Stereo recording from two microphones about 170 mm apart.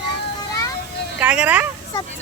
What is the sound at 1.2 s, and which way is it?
Speech, 10° right (ahead or behind).